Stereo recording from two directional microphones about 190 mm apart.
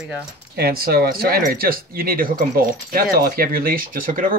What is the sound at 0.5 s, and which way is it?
Speech, 55° right (ahead or behind).